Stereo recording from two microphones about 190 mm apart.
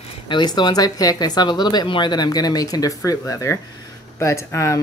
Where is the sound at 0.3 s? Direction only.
25° left (ahead or behind).